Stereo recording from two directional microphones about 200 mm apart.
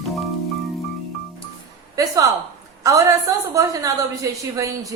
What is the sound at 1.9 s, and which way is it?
A woman's voice, 15° right (ahead or behind).